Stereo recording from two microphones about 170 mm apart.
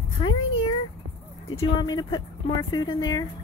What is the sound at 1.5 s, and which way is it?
Speech, 25° left (ahead or behind).